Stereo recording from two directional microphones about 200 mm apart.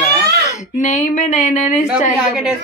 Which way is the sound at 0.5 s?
35° left (ahead or behind).